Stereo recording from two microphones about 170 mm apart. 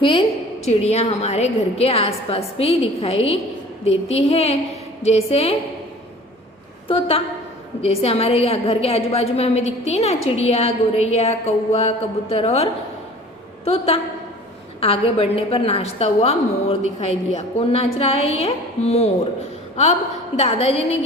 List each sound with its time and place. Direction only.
0.0 s a woman's voice: 30° left (ahead or behind)
6.8 s a woman's voice: 35° left (ahead or behind)
13.7 s a woman's voice: 35° left (ahead or behind)